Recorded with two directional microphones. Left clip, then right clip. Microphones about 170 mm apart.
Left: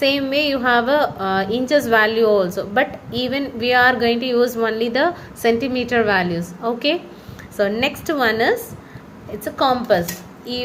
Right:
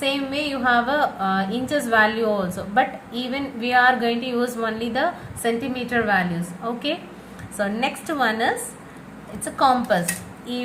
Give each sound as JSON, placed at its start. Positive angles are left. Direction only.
{"t": 0.0, "sound": "a woman's voice", "side_deg": 50}